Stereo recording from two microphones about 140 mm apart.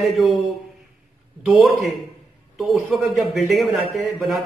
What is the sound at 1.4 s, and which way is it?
A man's voice, centre (ahead or behind).